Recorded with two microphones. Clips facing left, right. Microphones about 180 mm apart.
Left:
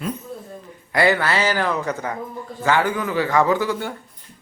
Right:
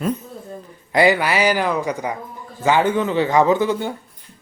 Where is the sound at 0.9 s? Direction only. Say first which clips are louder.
Right 2 dB; 15° right (ahead or behind).